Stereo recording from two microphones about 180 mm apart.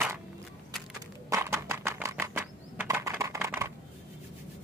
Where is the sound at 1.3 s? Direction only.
15° right (ahead or behind).